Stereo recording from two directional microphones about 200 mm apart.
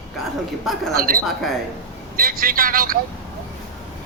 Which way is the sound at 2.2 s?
45° right (ahead or behind).